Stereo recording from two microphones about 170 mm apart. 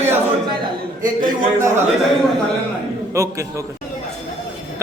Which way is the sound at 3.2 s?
15° right (ahead or behind).